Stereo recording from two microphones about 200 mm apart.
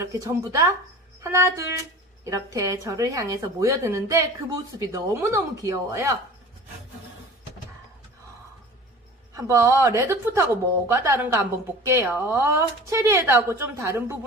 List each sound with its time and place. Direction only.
0.0 s a woman's voice: 15° right (ahead or behind)
2.2 s a woman's voice: 15° right (ahead or behind)
9.4 s a woman's voice: 15° right (ahead or behind)